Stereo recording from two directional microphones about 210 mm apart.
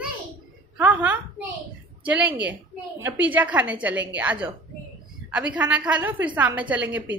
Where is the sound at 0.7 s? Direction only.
5° right (ahead or behind).